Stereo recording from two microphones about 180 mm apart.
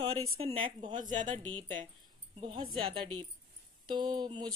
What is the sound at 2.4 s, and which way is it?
Speech, 30° right (ahead or behind).